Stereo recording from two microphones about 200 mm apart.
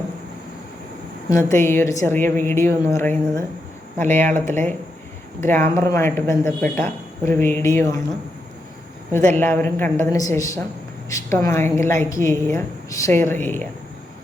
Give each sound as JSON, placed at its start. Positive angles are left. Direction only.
{"t": 1.3, "sound": "a man's voice", "side_deg": 15}
{"t": 9.1, "sound": "a man's voice", "side_deg": 10}